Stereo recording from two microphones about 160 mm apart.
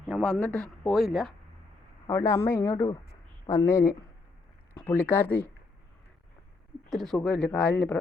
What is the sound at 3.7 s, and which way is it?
Speech, 15° left (ahead or behind).